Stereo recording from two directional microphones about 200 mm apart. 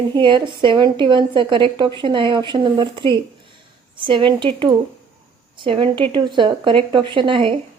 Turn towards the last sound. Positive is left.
turn(degrees=-25)  # may be behind; listen again after turning